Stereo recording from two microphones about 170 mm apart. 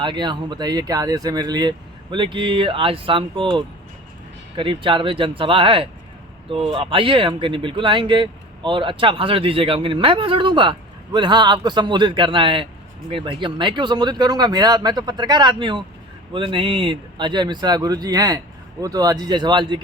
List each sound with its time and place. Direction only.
0.0 s speech: 25° right (ahead or behind)